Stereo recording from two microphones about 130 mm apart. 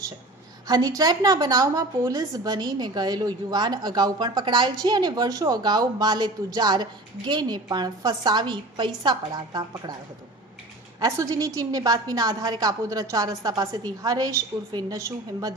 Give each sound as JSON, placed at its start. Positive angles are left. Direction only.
{"t": 0.7, "sound": "a woman's voice", "side_deg": -30}
{"t": 11.0, "sound": "a woman's voice", "side_deg": -25}